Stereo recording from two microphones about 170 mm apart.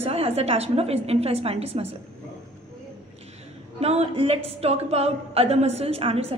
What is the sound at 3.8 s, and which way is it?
A woman's voice, 35° right (ahead or behind).